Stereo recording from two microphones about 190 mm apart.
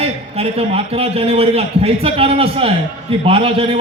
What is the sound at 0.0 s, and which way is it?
A man's voice, 30° right (ahead or behind).